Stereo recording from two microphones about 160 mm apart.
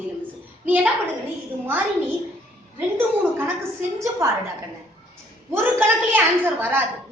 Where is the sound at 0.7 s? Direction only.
10° right (ahead or behind).